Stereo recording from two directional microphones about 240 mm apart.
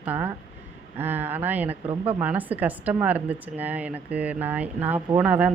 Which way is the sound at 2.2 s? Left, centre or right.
Centre.